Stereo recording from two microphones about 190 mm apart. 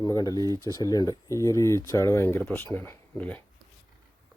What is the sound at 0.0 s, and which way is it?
Speech, 20° left (ahead or behind).